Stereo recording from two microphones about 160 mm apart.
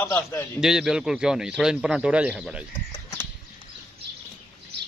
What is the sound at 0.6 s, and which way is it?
Speech, 5° right (ahead or behind).